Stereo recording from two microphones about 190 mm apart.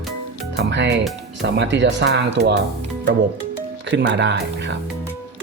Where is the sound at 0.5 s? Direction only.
65° right (ahead or behind).